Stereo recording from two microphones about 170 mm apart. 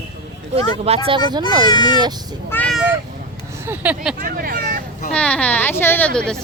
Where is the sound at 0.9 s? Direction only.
30° right (ahead or behind).